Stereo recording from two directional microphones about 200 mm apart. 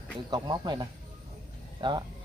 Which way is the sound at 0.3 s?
20° right (ahead or behind).